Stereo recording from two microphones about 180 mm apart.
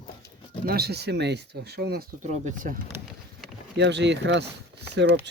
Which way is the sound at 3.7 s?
75° right (ahead or behind).